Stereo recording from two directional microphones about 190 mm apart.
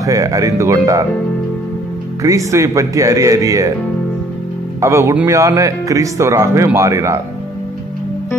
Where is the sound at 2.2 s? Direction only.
15° right (ahead or behind).